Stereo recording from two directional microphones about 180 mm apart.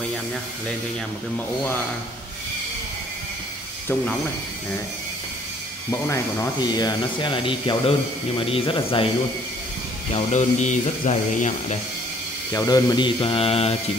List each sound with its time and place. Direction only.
5.9 s speech: 15° left (ahead or behind)
10.1 s speech: 40° left (ahead or behind)
12.5 s speech: 20° left (ahead or behind)